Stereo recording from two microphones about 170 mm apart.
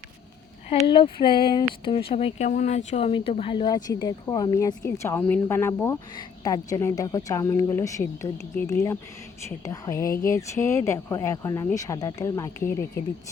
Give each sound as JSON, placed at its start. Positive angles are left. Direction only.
{"t": 0.9, "sound": "speech", "side_deg": 30}